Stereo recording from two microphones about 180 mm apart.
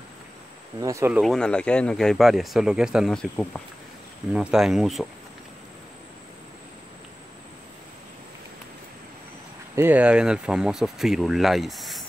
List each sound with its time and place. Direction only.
0.7 s speech: 20° right (ahead or behind)
1.2 s speech: 5° left (ahead or behind)
9.8 s speech: 10° right (ahead or behind)